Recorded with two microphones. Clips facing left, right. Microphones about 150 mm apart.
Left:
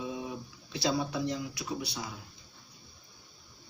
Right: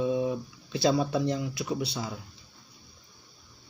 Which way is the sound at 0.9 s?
30° right (ahead or behind).